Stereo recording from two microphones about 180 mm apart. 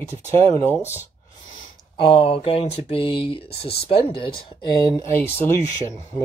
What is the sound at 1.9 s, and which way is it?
Speech, 30° left (ahead or behind).